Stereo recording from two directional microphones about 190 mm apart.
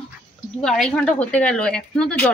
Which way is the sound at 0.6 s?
5° left (ahead or behind).